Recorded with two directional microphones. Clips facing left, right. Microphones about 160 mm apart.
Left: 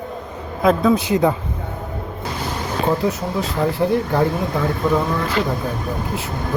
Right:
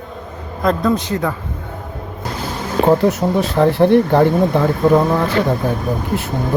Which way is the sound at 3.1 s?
70° right (ahead or behind).